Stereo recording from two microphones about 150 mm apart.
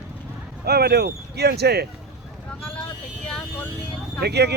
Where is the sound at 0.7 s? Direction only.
90° right.